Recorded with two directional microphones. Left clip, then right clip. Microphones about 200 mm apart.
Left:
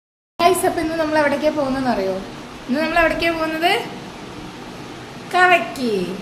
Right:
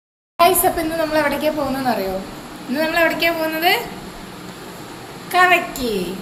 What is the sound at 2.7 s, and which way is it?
A woman's voice, 25° left (ahead or behind).